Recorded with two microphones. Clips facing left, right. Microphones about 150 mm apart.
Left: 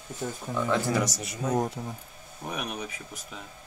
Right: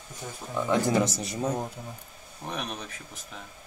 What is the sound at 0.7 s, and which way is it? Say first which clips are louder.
Speech: right 4 dB; 25° right (ahead or behind).